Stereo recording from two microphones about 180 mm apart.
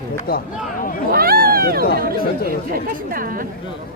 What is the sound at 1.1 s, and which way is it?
Speech, 55° right (ahead or behind).